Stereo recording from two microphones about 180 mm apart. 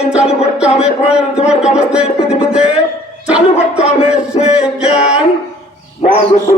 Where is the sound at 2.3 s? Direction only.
5° right (ahead or behind).